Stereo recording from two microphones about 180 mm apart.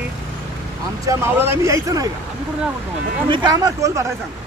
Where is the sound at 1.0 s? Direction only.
15° right (ahead or behind).